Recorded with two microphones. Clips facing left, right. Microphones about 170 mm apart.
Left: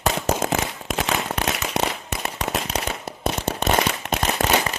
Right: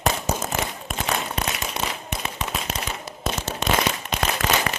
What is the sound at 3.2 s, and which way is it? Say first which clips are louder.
Firecracker: left 3 dB; 60° left (ahead or behind).